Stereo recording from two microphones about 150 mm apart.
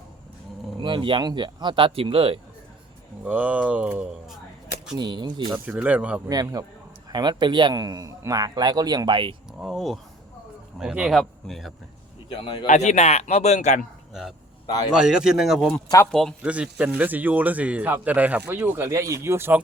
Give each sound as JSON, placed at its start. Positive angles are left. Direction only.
{"t": 0.8, "sound": "speech", "side_deg": -30}
{"t": 3.2, "sound": "speech", "side_deg": -10}
{"t": 4.9, "sound": "speech", "side_deg": -30}
{"t": 5.6, "sound": "speech", "side_deg": -10}
{"t": 6.2, "sound": "speech", "side_deg": -25}
{"t": 9.5, "sound": "speech", "side_deg": 0}
{"t": 12.4, "sound": "speech", "side_deg": 35}
{"t": 12.6, "sound": "a man's voice", "side_deg": 50}
{"t": 14.1, "sound": "a man's voice", "side_deg": 0}
{"t": 15.9, "sound": "speech", "side_deg": 25}
{"t": 16.4, "sound": "speech", "side_deg": -10}